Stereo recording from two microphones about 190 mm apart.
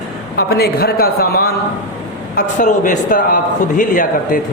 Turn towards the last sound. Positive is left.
turn(degrees=45)  # may be behind; listen again after turning